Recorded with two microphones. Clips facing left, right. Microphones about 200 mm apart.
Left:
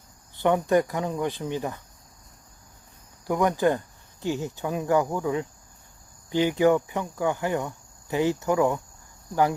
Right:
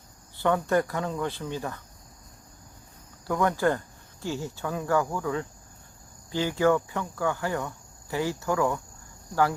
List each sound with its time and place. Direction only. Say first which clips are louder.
0.3 s speech: left 3 dB; 15° left (ahead or behind)
3.2 s speech: left 2 dB; 15° left (ahead or behind)